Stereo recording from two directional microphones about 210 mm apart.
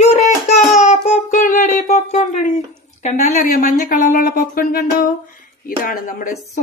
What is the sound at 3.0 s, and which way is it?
A woman's voice, 35° left (ahead or behind).